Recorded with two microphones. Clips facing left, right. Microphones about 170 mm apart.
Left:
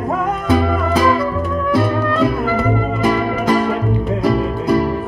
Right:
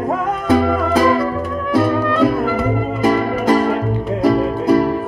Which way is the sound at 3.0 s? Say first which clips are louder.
Right 2 dB; 40° right (ahead or behind).